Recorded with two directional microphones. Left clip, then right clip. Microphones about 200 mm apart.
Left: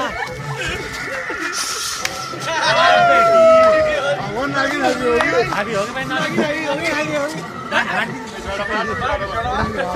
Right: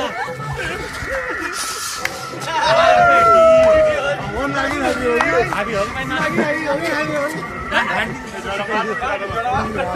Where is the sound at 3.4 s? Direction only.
Centre (ahead or behind).